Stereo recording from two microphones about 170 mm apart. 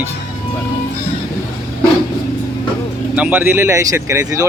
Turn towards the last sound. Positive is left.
turn(degrees=-20)  # may be behind; listen again after turning